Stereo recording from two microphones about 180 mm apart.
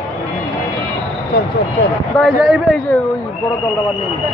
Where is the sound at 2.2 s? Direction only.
Centre (ahead or behind).